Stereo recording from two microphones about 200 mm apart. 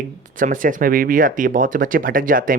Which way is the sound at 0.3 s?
40° right (ahead or behind).